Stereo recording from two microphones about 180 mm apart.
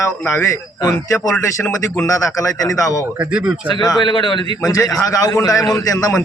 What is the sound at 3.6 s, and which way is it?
A man's voice, 25° left (ahead or behind).